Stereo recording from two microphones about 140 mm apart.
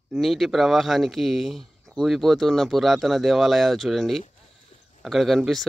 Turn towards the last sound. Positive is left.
turn(degrees=0)  # may be behind; listen again after turning